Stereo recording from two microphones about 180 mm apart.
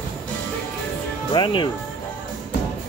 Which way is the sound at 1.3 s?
25° left (ahead or behind).